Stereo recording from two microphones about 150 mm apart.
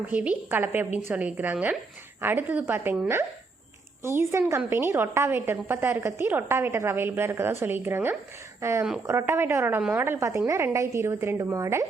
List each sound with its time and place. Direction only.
0.1 s a woman's voice: 10° right (ahead or behind)